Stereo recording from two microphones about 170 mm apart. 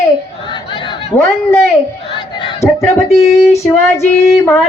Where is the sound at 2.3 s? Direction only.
30° left (ahead or behind).